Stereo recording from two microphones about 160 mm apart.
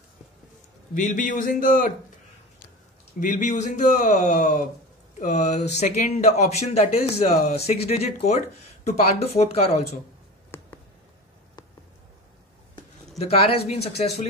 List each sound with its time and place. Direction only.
0.9 s speech: 50° left (ahead or behind)
3.2 s speech: 55° left (ahead or behind)
10.5 s a sound: 15° left (ahead or behind)
13.2 s speech: 40° left (ahead or behind)